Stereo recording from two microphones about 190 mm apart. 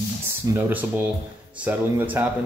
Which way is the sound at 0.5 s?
10° right (ahead or behind).